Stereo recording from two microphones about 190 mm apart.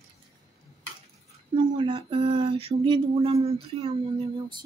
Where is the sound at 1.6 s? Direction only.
25° right (ahead or behind).